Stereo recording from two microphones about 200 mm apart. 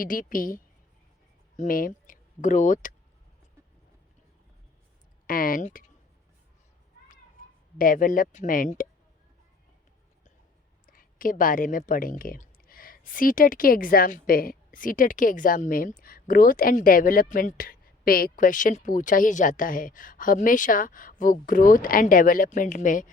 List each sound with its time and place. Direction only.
0.0 s speech: 45° left (ahead or behind)
5.2 s speech: 45° left (ahead or behind)
7.8 s speech: 45° left (ahead or behind)
10.9 s speech: 45° left (ahead or behind)